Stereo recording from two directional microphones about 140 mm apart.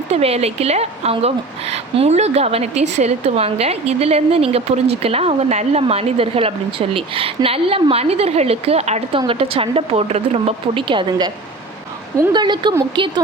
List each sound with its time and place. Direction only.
0.1 s a woman's voice: 50° right (ahead or behind)
12.3 s speech: 35° right (ahead or behind)